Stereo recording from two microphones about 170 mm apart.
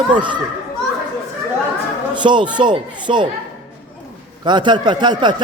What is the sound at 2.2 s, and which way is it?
A man's voice, 25° right (ahead or behind).